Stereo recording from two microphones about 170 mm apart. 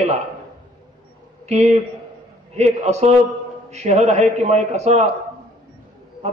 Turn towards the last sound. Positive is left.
turn(degrees=-40)  # may be behind; listen again after turning